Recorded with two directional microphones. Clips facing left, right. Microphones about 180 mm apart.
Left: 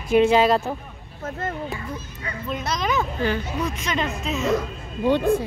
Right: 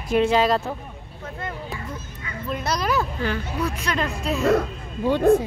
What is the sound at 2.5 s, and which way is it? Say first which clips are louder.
Speech: right 1 dB; 5° right (ahead or behind).